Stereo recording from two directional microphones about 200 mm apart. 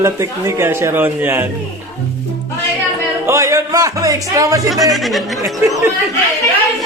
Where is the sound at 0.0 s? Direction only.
15° right (ahead or behind).